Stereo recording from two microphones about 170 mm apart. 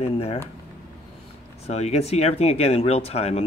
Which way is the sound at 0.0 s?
35° left (ahead or behind).